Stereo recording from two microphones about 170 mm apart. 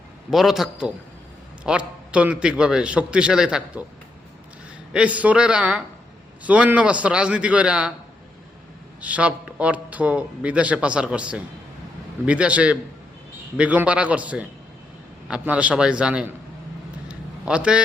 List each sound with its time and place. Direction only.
0.3 s a man's voice: centre (ahead or behind)
4.9 s speech: 10° right (ahead or behind)
9.0 s a man's voice: 10° right (ahead or behind)
17.1 s a sound: 5° right (ahead or behind)